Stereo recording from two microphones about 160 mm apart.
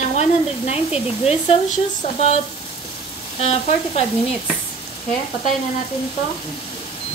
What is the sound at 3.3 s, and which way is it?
Frying, 40° left (ahead or behind).